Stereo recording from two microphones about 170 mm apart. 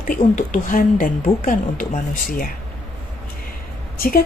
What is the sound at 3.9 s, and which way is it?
Speech, 60° left (ahead or behind).